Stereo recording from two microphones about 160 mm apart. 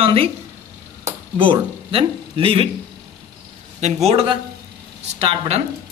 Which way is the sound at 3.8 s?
40° right (ahead or behind).